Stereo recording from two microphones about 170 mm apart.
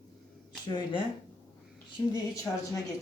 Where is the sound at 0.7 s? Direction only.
25° left (ahead or behind).